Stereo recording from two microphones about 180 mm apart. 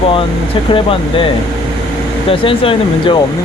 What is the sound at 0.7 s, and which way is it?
Speech, 30° left (ahead or behind).